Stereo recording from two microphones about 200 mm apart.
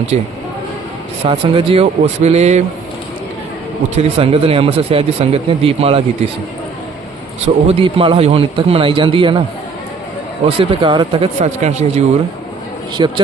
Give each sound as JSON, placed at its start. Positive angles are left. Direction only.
{"t": 1.2, "sound": "speech", "side_deg": -25}
{"t": 3.8, "sound": "a man's voice", "side_deg": -30}
{"t": 7.4, "sound": "a man's voice", "side_deg": -30}
{"t": 10.6, "sound": "a man's voice", "side_deg": -25}
{"t": 13.0, "sound": "a man's voice", "side_deg": -25}